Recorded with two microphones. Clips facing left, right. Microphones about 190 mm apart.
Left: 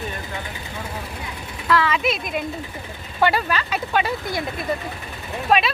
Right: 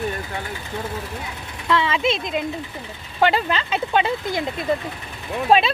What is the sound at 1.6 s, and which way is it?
Speech, 25° right (ahead or behind).